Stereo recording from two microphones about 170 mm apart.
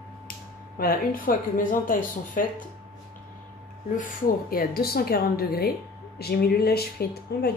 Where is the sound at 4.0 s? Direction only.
50° left (ahead or behind); by 7.5 s 70° left (ahead or behind).